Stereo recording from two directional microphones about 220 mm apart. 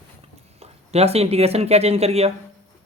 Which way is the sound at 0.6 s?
30° right (ahead or behind).